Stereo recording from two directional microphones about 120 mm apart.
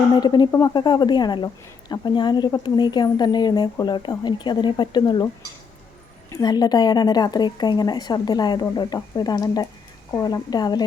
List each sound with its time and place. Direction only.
0.2 s speech: 35° left (ahead or behind)
6.3 s speech: 35° left (ahead or behind)